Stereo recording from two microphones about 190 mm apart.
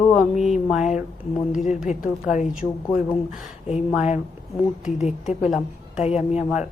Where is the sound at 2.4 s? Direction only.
5° right (ahead or behind).